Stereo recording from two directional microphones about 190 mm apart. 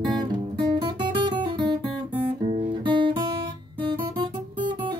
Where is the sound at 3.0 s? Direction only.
25° right (ahead or behind).